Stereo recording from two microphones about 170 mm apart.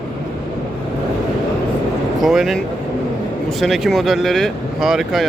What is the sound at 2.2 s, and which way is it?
Speech, centre (ahead or behind).